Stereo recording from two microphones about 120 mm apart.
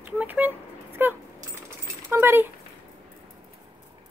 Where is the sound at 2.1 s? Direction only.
20° right (ahead or behind).